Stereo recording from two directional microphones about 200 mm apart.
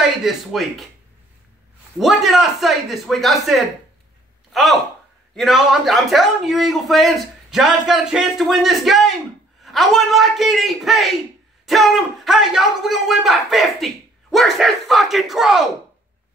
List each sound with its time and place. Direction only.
0.0 s speech: centre (ahead or behind)
2.0 s speech: centre (ahead or behind)